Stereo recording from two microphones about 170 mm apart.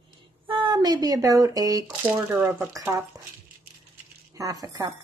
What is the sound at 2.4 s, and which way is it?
Speech, centre (ahead or behind).